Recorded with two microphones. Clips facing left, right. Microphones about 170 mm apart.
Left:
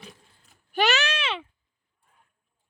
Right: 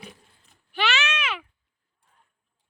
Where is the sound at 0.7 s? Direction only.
40° left (ahead or behind).